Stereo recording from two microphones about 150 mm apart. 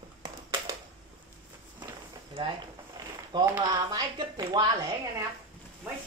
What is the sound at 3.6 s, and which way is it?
A woman's voice, 30° right (ahead or behind).